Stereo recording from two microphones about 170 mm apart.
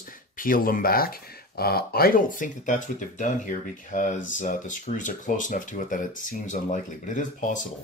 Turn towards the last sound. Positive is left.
turn(degrees=50)  # may be behind; listen again after turning